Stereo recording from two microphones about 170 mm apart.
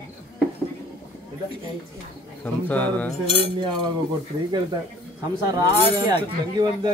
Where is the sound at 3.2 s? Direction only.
35° left (ahead or behind).